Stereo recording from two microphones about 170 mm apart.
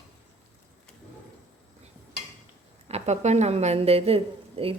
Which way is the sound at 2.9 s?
40° right (ahead or behind).